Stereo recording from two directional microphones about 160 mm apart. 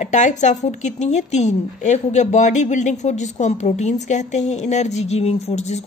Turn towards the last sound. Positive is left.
turn(degrees=45)  # may be behind; listen again after turning